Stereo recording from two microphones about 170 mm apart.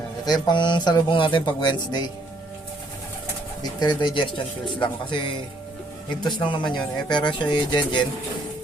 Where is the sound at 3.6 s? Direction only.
25° left (ahead or behind).